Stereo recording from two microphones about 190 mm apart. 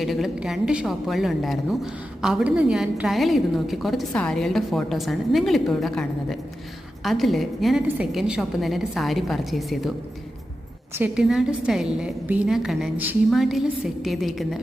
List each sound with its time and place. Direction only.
0.0 s a woman's voice: centre (ahead or behind)
10.9 s a woman's voice: 5° right (ahead or behind)